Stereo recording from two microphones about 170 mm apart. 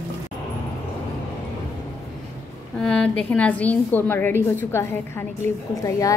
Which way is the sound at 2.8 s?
5° left (ahead or behind).